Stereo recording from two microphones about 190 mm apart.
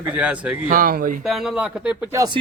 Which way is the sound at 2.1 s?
20° right (ahead or behind).